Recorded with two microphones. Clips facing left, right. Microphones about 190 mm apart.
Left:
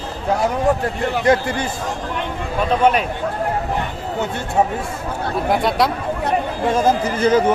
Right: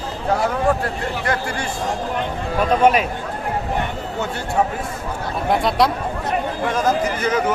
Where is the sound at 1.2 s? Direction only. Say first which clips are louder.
Left 8 dB; 20° left (ahead or behind).